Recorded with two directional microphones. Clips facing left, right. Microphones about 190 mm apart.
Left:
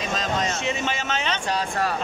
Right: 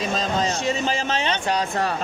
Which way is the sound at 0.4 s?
35° right (ahead or behind).